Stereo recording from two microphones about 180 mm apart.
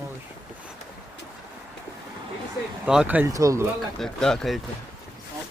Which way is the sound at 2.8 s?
5° right (ahead or behind).